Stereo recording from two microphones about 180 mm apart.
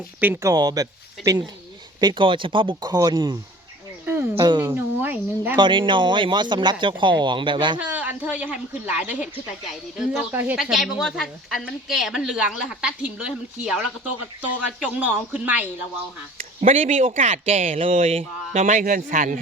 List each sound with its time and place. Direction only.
0.2 s speech: 10° right (ahead or behind)
0.5 s a man's voice: 20° right (ahead or behind)
4.0 s a sound: 10° right (ahead or behind)
4.4 s a man's voice: 25° right (ahead or behind)
4.7 s speech: 10° right (ahead or behind)
5.5 s a man's voice: 25° right (ahead or behind)
7.8 s a woman's voice: 10° right (ahead or behind)
16.4 s speech: 35° right (ahead or behind)
18.6 s a man's voice: 45° right (ahead or behind)